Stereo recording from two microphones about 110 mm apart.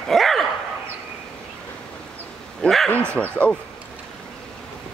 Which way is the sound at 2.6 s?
Centre (ahead or behind).